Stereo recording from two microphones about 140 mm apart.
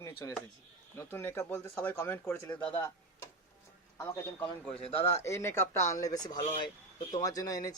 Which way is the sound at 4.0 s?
15° left (ahead or behind).